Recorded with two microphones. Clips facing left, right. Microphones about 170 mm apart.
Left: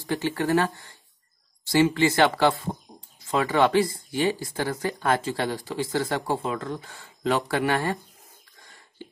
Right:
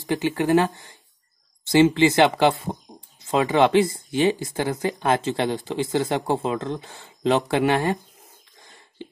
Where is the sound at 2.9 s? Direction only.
20° right (ahead or behind).